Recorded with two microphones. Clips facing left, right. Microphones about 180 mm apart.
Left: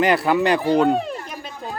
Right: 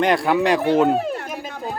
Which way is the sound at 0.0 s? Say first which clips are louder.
Even; centre (ahead or behind).